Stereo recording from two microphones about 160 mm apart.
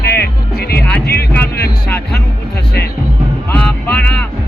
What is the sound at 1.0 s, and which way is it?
Music, 90° left.